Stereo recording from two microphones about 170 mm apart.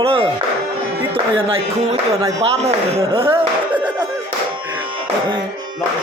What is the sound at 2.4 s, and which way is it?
Speech, 35° right (ahead or behind).